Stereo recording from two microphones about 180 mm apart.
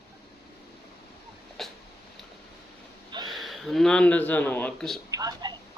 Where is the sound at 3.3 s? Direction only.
Centre (ahead or behind).